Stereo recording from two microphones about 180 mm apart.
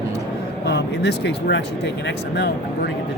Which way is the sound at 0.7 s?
70° left (ahead or behind).